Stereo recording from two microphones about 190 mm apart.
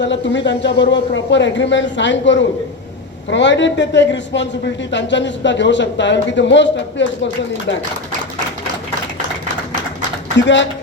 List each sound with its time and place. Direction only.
0.0 s a man's voice: 70° left (ahead or behind)
10.3 s a man's voice: 70° left (ahead or behind)